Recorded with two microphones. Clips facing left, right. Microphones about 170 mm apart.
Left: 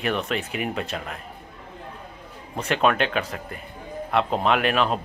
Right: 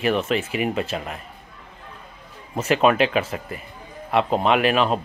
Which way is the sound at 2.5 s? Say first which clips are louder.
Right 4 dB; 5° right (ahead or behind).